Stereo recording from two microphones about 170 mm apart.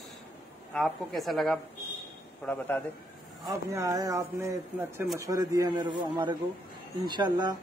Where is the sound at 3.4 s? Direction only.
20° right (ahead or behind).